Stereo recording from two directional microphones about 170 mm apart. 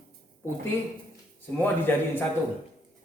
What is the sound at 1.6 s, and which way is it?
Speech, 10° left (ahead or behind).